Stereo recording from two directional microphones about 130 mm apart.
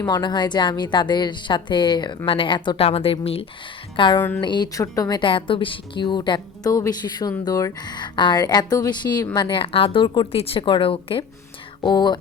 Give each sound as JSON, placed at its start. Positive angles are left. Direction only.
{"t": 0.0, "sound": "speech", "side_deg": 35}